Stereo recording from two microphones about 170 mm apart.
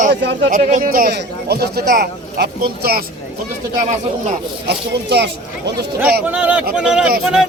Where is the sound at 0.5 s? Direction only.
55° right (ahead or behind).